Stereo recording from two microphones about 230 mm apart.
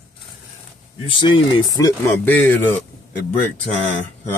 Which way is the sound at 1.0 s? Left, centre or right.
Left.